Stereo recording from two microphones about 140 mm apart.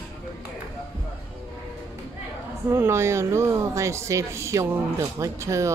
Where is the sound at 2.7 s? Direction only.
20° right (ahead or behind).